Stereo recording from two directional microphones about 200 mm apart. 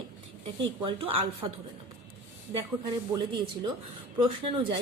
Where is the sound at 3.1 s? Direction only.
20° right (ahead or behind).